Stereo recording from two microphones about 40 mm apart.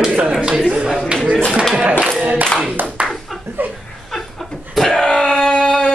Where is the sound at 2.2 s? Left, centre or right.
Right.